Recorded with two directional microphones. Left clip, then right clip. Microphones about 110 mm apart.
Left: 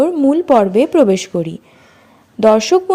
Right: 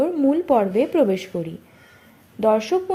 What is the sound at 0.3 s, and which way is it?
A woman's voice, 35° left (ahead or behind).